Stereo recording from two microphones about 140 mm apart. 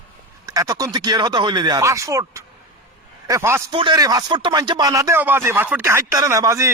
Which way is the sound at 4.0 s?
25° right (ahead or behind).